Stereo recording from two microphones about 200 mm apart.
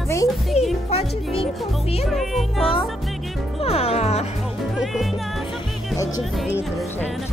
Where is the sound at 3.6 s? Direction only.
30° left (ahead or behind).